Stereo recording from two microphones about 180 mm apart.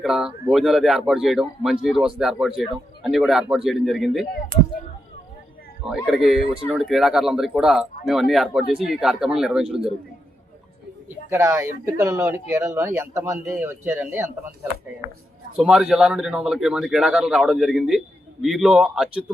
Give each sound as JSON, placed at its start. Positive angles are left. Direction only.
{"t": 0.0, "sound": "speech", "side_deg": -5}
{"t": 5.8, "sound": "speech", "side_deg": 0}
{"t": 11.3, "sound": "speech", "side_deg": -15}
{"t": 15.5, "sound": "speech", "side_deg": -5}